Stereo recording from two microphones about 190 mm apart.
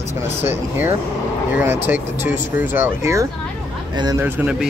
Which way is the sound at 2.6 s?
10° right (ahead or behind).